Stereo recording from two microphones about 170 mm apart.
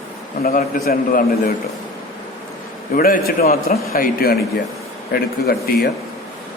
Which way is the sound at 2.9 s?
60° left (ahead or behind).